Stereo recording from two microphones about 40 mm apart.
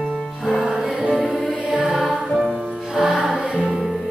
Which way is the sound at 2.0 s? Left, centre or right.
Centre.